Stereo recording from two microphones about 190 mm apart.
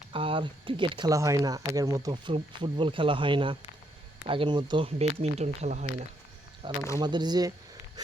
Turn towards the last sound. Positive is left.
turn(degrees=-20)  # may be behind; listen again after turning